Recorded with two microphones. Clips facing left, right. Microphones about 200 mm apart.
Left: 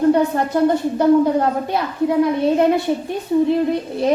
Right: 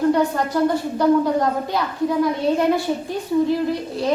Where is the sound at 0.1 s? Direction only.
25° left (ahead or behind).